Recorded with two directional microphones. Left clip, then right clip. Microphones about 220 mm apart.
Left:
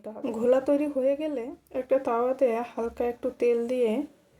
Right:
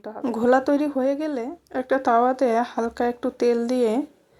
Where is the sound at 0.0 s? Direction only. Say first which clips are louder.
Right 4 dB; 15° right (ahead or behind).